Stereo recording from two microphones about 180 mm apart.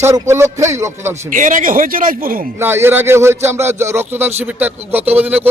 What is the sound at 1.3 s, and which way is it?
Speech, 45° right (ahead or behind).